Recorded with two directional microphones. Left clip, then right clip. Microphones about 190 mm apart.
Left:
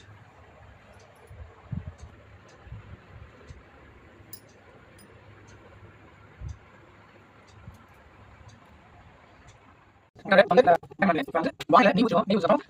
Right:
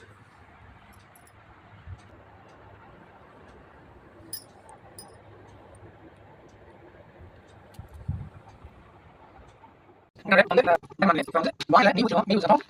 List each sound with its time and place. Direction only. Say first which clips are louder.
10.2 s speech: left 1 dB; 40° left (ahead or behind)
11.0 s speech: right 2 dB; 30° left (ahead or behind)
11.7 s speech: even; 40° left (ahead or behind)